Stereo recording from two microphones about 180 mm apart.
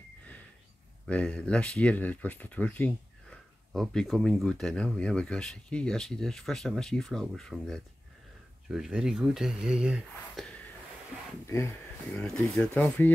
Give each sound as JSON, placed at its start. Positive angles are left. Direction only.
{"t": 1.0, "sound": "speech", "side_deg": 5}
{"t": 11.4, "sound": "speech", "side_deg": 15}